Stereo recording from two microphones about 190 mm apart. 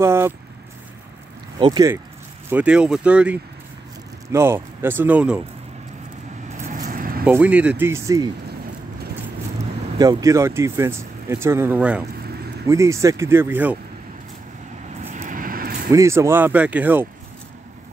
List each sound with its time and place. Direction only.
0.0 s speech: 15° right (ahead or behind)
1.6 s speech: 20° right (ahead or behind)
2.5 s speech: 5° right (ahead or behind)
6.5 s vehicle: 40° right (ahead or behind)
7.2 s speech: 5° right (ahead or behind)
9.9 s speech: 20° right (ahead or behind)
15.1 s vehicle: 45° right (ahead or behind)
15.9 s speech: 15° right (ahead or behind)